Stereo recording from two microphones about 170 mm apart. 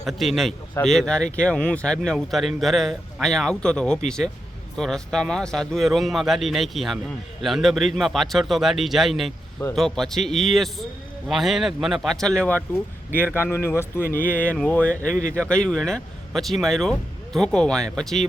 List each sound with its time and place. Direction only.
0.0 s a man's voice: centre (ahead or behind)
15.1 s speech: 50° left (ahead or behind)
15.4 s a man's voice: 5° left (ahead or behind)